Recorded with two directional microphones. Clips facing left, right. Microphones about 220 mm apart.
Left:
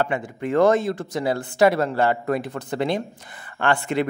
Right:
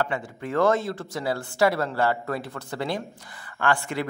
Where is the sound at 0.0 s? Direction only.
15° left (ahead or behind).